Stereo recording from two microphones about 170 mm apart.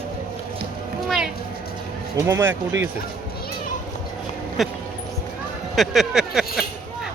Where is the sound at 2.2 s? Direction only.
15° right (ahead or behind).